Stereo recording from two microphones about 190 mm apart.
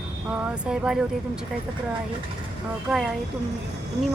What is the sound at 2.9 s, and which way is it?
Speech, 5° right (ahead or behind).